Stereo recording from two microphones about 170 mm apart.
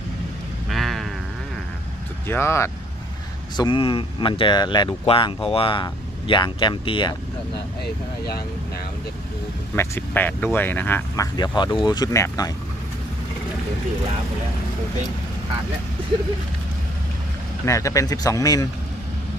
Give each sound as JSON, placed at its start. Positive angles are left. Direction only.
{"t": 0.7, "sound": "a sound", "side_deg": 0}
{"t": 2.2, "sound": "speech", "side_deg": 15}
{"t": 3.6, "sound": "speech", "side_deg": 30}
{"t": 9.7, "sound": "speech", "side_deg": 10}
{"t": 11.3, "sound": "speech", "side_deg": 25}
{"t": 17.7, "sound": "speech", "side_deg": 20}